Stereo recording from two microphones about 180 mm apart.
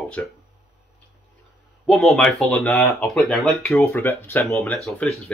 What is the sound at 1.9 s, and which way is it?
Speech, 5° left (ahead or behind).